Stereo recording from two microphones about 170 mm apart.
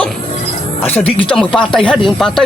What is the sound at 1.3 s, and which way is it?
Speech, 5° left (ahead or behind).